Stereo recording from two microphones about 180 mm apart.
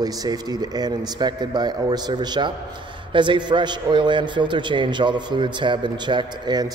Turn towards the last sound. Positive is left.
turn(degrees=-25)  # may be behind; listen again after turning